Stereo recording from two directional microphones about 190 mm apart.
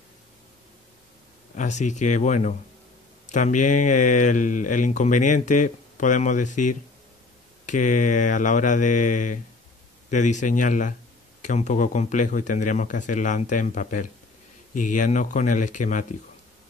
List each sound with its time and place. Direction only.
1.5 s speech: 40° left (ahead or behind)